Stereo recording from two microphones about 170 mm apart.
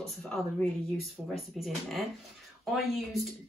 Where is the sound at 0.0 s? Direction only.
5° left (ahead or behind).